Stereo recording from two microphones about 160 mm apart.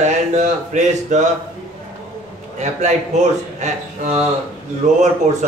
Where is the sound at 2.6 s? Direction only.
45° right (ahead or behind).